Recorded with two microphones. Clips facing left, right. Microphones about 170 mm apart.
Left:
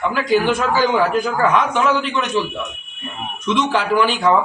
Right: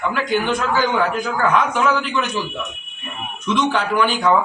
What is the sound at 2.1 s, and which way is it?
Speech, 30° left (ahead or behind).